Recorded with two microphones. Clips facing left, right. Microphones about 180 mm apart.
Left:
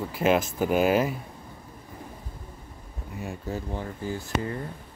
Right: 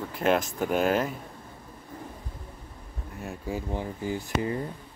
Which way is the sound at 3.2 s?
Centre (ahead or behind).